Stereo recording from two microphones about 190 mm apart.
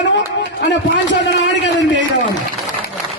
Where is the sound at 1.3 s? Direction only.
65° left (ahead or behind).